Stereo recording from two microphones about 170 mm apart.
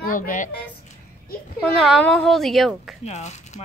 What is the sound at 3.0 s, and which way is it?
Speech, 40° left (ahead or behind).